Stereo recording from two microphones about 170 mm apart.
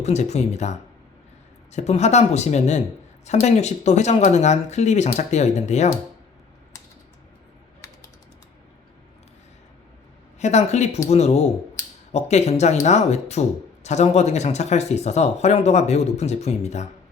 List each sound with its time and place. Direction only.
0.0 s speech: 40° left (ahead or behind)
7.8 s typing: 15° left (ahead or behind)
10.4 s speech: 40° left (ahead or behind)